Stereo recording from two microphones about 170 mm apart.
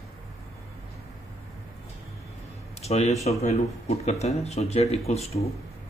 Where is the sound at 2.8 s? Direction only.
40° left (ahead or behind).